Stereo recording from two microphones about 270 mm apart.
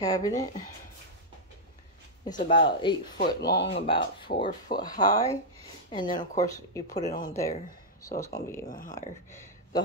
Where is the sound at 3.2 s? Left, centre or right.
Left.